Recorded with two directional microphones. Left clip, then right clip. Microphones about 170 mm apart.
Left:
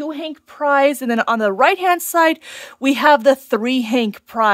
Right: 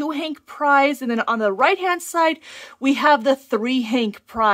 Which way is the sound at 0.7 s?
25° left (ahead or behind).